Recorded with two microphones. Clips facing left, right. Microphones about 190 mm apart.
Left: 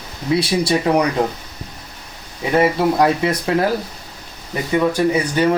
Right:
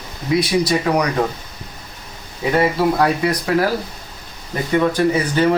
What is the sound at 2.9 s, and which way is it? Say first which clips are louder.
Speech: left 1 dB; 25° left (ahead or behind).